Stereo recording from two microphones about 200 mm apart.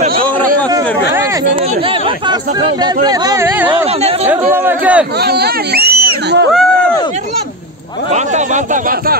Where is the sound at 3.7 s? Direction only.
30° right (ahead or behind).